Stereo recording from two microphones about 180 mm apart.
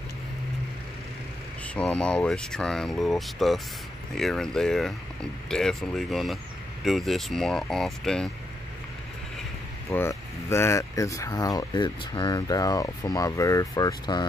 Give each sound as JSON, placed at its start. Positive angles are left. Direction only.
{"t": 1.7, "sound": "speech", "side_deg": 5}
{"t": 9.8, "sound": "speech", "side_deg": 15}